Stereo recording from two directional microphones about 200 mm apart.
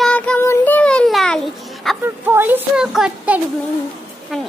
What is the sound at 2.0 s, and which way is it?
Speech, 10° right (ahead or behind).